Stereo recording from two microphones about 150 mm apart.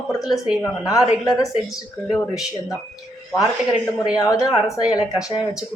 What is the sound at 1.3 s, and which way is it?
Speech, 5° right (ahead or behind).